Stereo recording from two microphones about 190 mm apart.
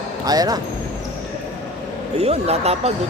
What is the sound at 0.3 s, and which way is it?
Speech, 20° right (ahead or behind).